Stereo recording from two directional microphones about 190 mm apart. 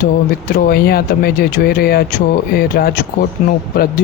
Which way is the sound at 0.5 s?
55° left (ahead or behind).